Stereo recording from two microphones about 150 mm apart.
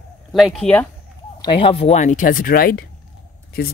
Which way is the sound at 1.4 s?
35° left (ahead or behind).